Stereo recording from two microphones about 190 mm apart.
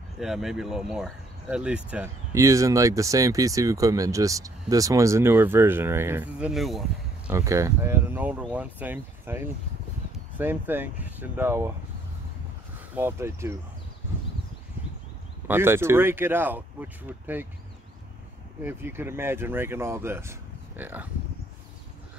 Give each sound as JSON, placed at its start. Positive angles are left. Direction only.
{"t": 0.2, "sound": "speech", "side_deg": 0}
{"t": 2.3, "sound": "speech", "side_deg": -15}
{"t": 7.2, "sound": "speech", "side_deg": -15}
{"t": 12.9, "sound": "speech", "side_deg": -15}
{"t": 15.4, "sound": "speech", "side_deg": -10}
{"t": 18.6, "sound": "speech", "side_deg": -10}